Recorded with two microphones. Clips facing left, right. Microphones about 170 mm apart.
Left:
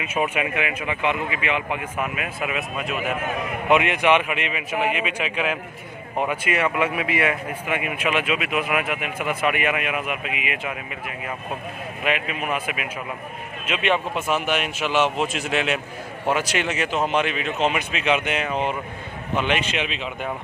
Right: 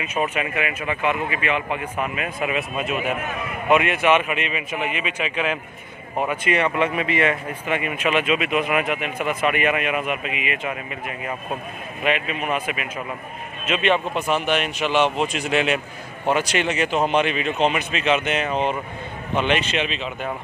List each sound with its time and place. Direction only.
0.0 s a man's voice: 10° left (ahead or behind)
3.6 s a man's voice: 20° left (ahead or behind)
4.4 s speech: 70° left (ahead or behind)
5.0 s a man's voice: 10° left (ahead or behind)